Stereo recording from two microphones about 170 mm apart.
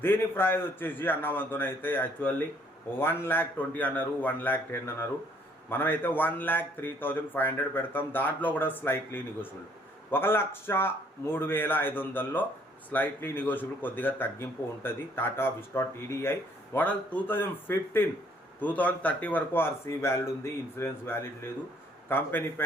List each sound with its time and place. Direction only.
0.0 s speech: 15° left (ahead or behind)